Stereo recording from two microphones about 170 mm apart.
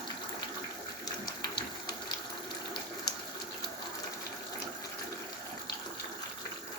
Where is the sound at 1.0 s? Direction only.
25° left (ahead or behind).